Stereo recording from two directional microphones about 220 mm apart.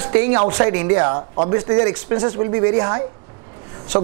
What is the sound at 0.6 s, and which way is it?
Speech, 15° right (ahead or behind).